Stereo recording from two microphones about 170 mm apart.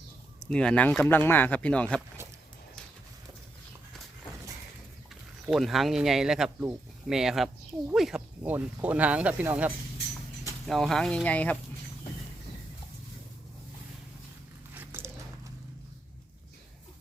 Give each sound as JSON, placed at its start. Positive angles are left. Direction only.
{"t": 0.4, "sound": "speech", "side_deg": 5}
{"t": 5.5, "sound": "speech", "side_deg": 0}
{"t": 10.7, "sound": "speech", "side_deg": 0}
{"t": 14.7, "sound": "dog", "side_deg": -10}